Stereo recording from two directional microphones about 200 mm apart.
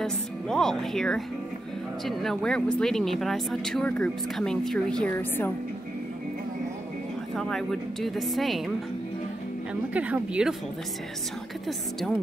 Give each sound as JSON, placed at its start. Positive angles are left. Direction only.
{"t": 0.0, "sound": "speech", "side_deg": 0}
{"t": 7.3, "sound": "speech", "side_deg": 5}
{"t": 9.9, "sound": "speech", "side_deg": -5}